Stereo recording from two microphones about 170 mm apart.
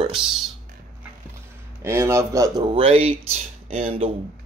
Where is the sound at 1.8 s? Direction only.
15° right (ahead or behind).